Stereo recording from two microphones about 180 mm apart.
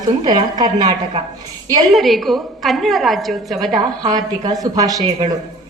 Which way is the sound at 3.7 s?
20° right (ahead or behind).